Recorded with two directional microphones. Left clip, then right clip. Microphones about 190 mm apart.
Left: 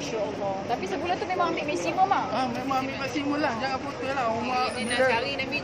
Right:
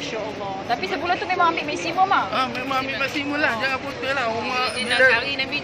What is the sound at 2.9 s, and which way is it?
Speech, 20° left (ahead or behind).